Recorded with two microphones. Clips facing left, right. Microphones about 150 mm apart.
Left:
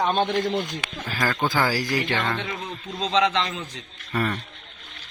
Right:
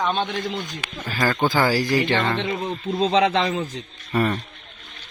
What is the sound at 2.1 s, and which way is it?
Speech, 10° right (ahead or behind).